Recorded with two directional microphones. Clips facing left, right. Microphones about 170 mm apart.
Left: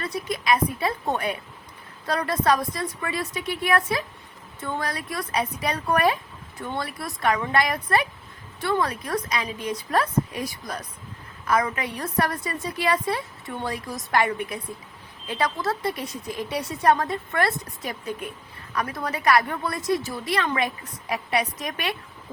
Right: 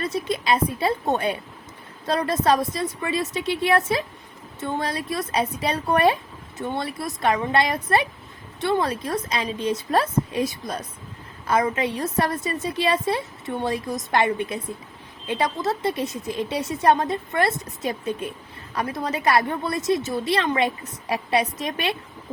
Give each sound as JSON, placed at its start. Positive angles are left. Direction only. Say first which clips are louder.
{"t": 0.0, "sound": "a woman's voice", "louder": "right 3 dB", "side_deg": -25}